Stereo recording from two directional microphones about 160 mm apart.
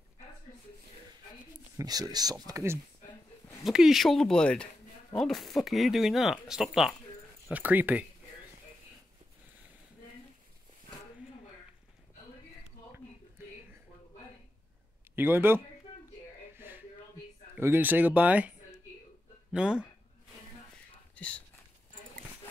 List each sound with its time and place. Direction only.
1.8 s speech: 25° right (ahead or behind)
3.6 s speech: centre (ahead or behind)
15.1 s speech: 15° right (ahead or behind)
16.5 s a sound: 15° right (ahead or behind)
17.6 s speech: 15° right (ahead or behind)
19.5 s speech: 5° right (ahead or behind)
21.1 s whispering: 10° left (ahead or behind)